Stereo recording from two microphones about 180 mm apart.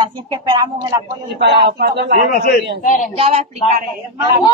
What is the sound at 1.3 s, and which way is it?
Speech, 70° right (ahead or behind).